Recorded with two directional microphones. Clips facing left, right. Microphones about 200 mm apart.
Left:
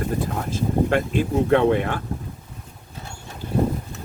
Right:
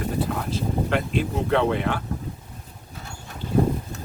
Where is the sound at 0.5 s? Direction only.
50° left (ahead or behind).